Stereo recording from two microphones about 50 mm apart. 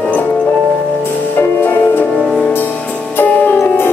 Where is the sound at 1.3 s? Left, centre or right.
Left.